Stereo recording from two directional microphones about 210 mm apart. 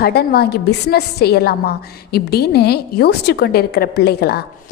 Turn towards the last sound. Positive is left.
turn(degrees=50)  # may be behind; listen again after turning